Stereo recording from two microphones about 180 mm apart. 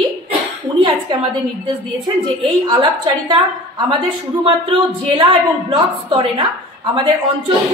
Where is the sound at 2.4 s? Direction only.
25° right (ahead or behind).